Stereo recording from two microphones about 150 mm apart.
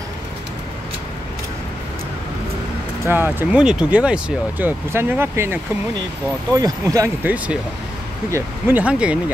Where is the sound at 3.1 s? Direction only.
15° right (ahead or behind).